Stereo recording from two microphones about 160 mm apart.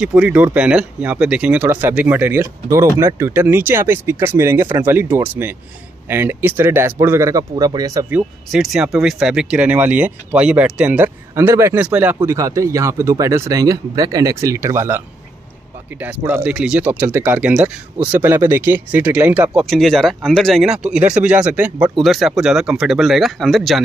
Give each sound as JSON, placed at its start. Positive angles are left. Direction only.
{"t": 0.0, "sound": "speech", "side_deg": -5}
{"t": 8.5, "sound": "speech", "side_deg": 0}